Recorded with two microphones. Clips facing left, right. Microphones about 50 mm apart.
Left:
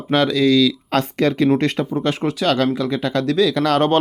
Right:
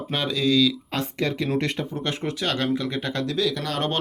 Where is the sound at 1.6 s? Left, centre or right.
Left.